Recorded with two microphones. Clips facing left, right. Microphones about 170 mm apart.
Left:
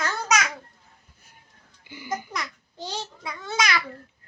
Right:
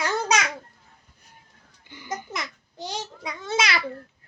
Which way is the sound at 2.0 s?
20° right (ahead or behind).